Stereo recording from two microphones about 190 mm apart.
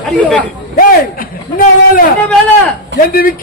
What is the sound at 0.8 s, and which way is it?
A man's voice, 50° left (ahead or behind).